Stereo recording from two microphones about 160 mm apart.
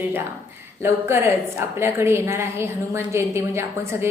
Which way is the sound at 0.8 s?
15° right (ahead or behind).